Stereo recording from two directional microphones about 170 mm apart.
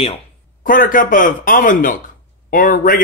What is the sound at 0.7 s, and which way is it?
Speech, 55° left (ahead or behind).